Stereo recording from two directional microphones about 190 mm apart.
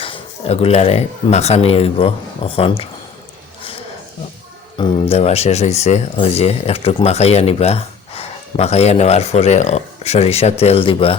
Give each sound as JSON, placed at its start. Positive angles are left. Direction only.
{"t": 0.0, "sound": "speech", "side_deg": 30}
{"t": 4.8, "sound": "speech", "side_deg": 30}